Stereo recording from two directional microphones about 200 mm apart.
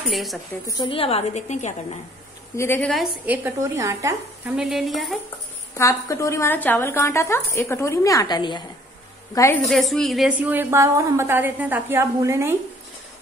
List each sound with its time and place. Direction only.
0.1 s a woman's voice: centre (ahead or behind)
0.7 s a woman's voice: 25° left (ahead or behind)
2.5 s a woman's voice: 10° left (ahead or behind)
2.9 s a woman's voice: 5° right (ahead or behind)
5.8 s a woman's voice: 15° left (ahead or behind)
9.7 s a woman's voice: centre (ahead or behind)